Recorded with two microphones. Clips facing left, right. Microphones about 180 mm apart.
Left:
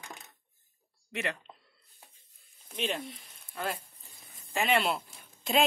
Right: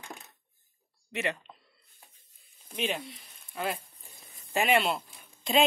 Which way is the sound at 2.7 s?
Centre (ahead or behind).